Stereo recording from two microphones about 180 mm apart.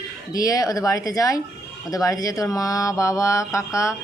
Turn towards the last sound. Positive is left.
turn(degrees=15)  # may be behind; listen again after turning